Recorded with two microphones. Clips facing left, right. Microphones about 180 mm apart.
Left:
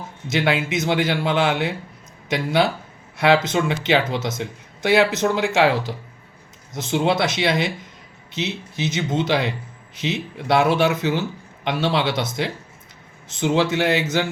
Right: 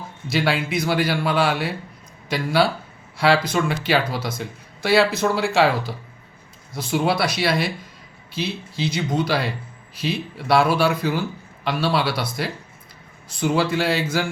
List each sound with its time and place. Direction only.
0.3 s speech: 20° left (ahead or behind)